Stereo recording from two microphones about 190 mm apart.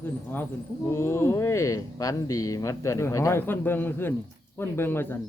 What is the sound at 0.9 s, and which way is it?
Speech, 15° left (ahead or behind).